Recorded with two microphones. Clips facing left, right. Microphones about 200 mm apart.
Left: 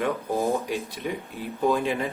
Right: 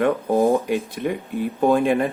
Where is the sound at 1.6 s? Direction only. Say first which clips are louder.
Right 6 dB; 55° right (ahead or behind).